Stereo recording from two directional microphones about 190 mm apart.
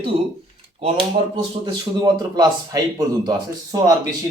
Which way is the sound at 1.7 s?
25° right (ahead or behind).